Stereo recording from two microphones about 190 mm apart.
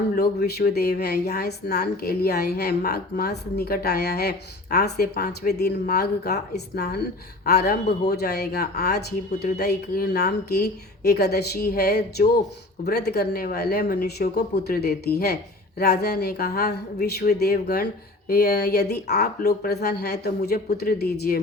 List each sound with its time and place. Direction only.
0.2 s a woman's voice: 60° left (ahead or behind)